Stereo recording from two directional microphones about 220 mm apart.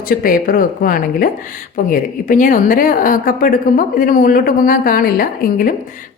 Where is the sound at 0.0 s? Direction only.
40° left (ahead or behind).